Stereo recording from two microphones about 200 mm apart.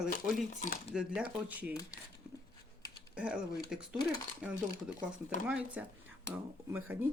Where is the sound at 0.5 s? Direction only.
40° left (ahead or behind).